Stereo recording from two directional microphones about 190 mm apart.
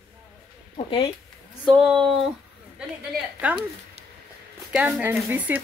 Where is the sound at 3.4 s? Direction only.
5° right (ahead or behind).